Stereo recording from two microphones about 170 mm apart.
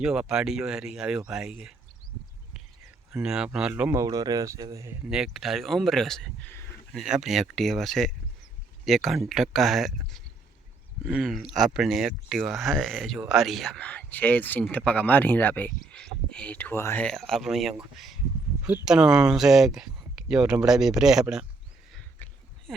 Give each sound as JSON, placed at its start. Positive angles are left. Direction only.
{"t": 0.0, "sound": "speech", "side_deg": -5}
{"t": 3.1, "sound": "speech", "side_deg": -5}
{"t": 5.0, "sound": "speech", "side_deg": -5}
{"t": 6.9, "sound": "speech", "side_deg": -5}
{"t": 21.9, "sound": "a sound", "side_deg": 5}